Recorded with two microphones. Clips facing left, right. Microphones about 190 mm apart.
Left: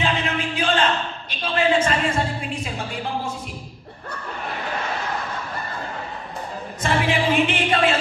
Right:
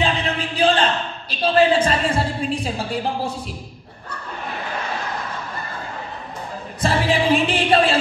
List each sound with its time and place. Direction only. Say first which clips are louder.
0.0 s a sound: right 2 dB; 35° right (ahead or behind)
1.4 s music: right 4 dB; 35° right (ahead or behind)
6.8 s music: right 2 dB; 35° right (ahead or behind)